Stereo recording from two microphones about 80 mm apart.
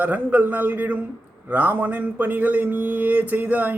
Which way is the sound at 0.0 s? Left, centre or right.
Centre.